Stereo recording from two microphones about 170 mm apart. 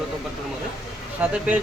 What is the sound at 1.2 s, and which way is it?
Speech, 10° right (ahead or behind).